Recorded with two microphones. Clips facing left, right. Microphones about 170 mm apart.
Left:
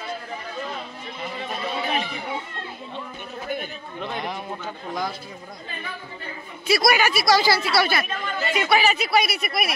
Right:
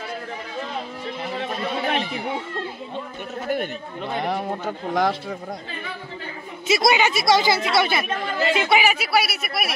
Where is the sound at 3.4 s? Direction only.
75° right (ahead or behind).